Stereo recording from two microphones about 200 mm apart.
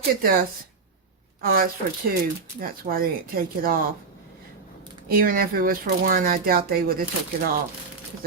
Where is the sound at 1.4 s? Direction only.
45° right (ahead or behind).